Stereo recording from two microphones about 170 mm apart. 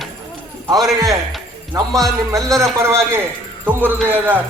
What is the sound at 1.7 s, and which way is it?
A man's voice, 20° right (ahead or behind).